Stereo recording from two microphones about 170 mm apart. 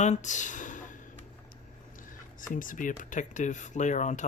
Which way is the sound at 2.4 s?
50° left (ahead or behind).